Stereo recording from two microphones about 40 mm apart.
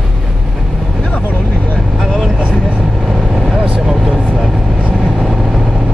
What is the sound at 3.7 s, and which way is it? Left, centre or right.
Vehicle, centre.